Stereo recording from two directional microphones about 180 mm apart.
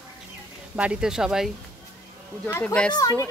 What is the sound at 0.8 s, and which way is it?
Speech, 5° right (ahead or behind).